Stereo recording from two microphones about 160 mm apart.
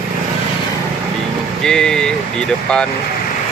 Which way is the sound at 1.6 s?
5° left (ahead or behind).